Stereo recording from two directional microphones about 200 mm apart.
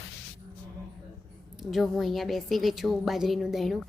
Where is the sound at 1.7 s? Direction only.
Centre (ahead or behind).